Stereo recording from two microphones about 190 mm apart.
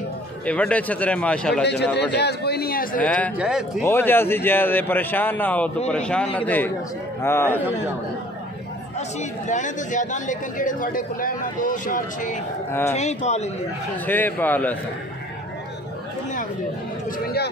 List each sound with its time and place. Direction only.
0.5 s a man's voice: 5° left (ahead or behind)
1.6 s a man's voice: 65° left (ahead or behind)
3.0 s a man's voice: 10° left (ahead or behind)
3.3 s speech: 5° right (ahead or behind)
3.8 s a man's voice: 10° left (ahead or behind)
9.5 s a man's voice: 40° left (ahead or behind)
14.0 s a man's voice: 10° left (ahead or behind)